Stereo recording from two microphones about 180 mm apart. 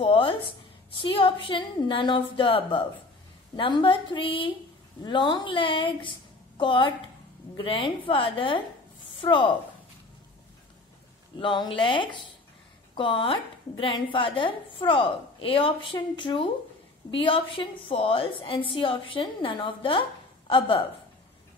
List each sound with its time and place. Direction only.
0.0 s a sound: 30° left (ahead or behind)
0.9 s a woman's voice: 30° left (ahead or behind)
11.3 s a woman's voice: 25° left (ahead or behind)